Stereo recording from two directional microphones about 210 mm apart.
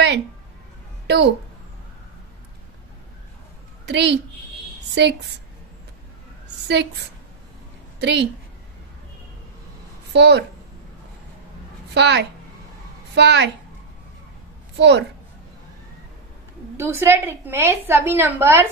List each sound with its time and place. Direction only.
1.0 s a child's voice: 55° right (ahead or behind)
3.8 s a woman's voice: 55° right (ahead or behind)
8.0 s a woman's voice: 55° right (ahead or behind)
10.1 s a woman's voice: 55° right (ahead or behind)
11.9 s a woman's voice: 55° right (ahead or behind)
14.8 s a woman's voice: 55° right (ahead or behind)
16.7 s a woman's voice: 10° right (ahead or behind)